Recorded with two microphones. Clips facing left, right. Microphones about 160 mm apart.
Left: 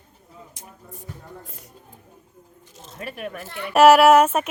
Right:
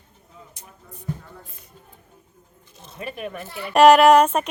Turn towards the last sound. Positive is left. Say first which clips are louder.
# even
turn(degrees=5)  # may be behind; listen again after turning